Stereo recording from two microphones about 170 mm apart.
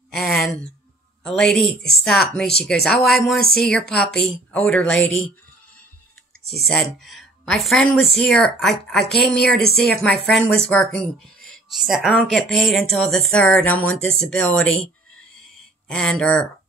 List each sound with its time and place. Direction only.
0.1 s a sound: centre (ahead or behind)
1.2 s speech: 5° left (ahead or behind)
6.6 s speech: centre (ahead or behind)
9.6 s speech: 70° left (ahead or behind)
10.0 s speech: 5° left (ahead or behind)
15.9 s speech: 5° left (ahead or behind)